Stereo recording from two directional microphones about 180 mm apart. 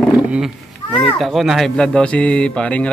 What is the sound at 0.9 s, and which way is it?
Speech, centre (ahead or behind).